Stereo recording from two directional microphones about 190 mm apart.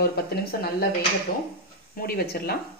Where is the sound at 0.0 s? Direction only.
55° left (ahead or behind).